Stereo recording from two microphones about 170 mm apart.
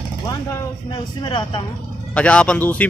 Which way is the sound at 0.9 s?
30° left (ahead or behind).